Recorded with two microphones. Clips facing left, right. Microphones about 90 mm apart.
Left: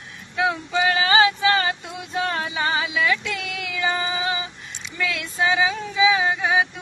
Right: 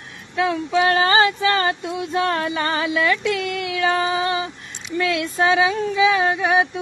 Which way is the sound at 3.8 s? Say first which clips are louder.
Right 4 dB; 60° right (ahead or behind).